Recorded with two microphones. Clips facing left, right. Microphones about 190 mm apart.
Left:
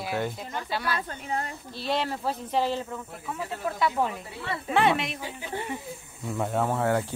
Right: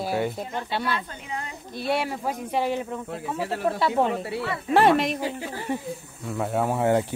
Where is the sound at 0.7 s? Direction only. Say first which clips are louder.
Right 2 dB; 25° right (ahead or behind).